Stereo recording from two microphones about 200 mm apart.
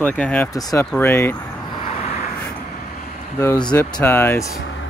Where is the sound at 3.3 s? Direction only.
15° left (ahead or behind).